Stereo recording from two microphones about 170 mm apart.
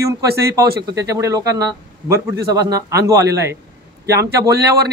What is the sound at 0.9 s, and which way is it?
A man's voice, 15° right (ahead or behind).